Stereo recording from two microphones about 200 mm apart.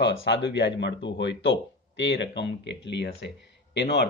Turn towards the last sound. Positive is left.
turn(degrees=60)  # may be behind; listen again after turning